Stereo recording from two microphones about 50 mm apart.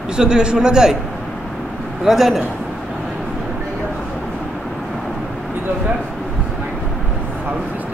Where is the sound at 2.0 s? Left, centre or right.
Centre.